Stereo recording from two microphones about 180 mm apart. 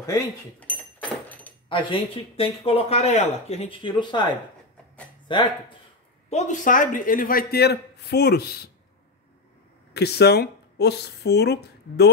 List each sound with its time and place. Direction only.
0.0 s speech: 20° left (ahead or behind)
0.6 s a sound: 10° left (ahead or behind)
1.7 s speech: 30° left (ahead or behind)
6.3 s a man's voice: 45° left (ahead or behind); by 8.5 s 60° left (ahead or behind)
9.9 s speech: 65° left (ahead or behind)